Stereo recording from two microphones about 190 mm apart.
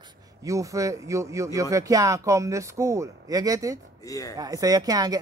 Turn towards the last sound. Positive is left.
turn(degrees=-20)  # may be behind; listen again after turning